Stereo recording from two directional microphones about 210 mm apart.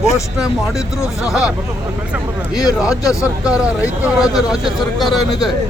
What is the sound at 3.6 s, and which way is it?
Speech, 5° right (ahead or behind).